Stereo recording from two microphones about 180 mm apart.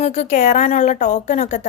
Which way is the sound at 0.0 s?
40° left (ahead or behind).